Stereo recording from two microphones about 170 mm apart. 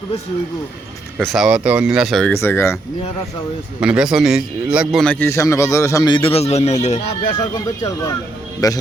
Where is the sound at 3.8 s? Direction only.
5° right (ahead or behind).